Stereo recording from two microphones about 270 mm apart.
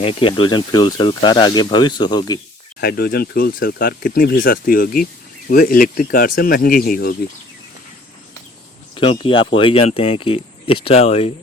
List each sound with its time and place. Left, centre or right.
0.0 s speech: centre
2.8 s speech: left
9.0 s speech: centre